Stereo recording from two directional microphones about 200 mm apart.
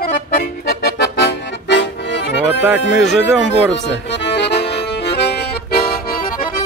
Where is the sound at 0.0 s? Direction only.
50° left (ahead or behind).